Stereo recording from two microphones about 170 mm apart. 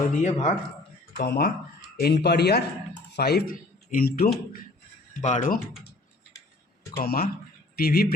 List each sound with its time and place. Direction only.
0.1 s speech: 45° left (ahead or behind)
1.2 s speech: 65° left (ahead or behind)
5.2 s speech: 45° left (ahead or behind)
6.9 s speech: 65° left (ahead or behind)